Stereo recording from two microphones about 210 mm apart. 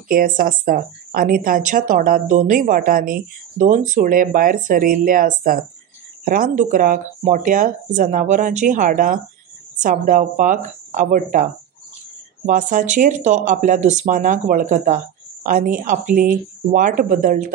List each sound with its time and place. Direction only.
0.1 s a woman's voice: 45° right (ahead or behind)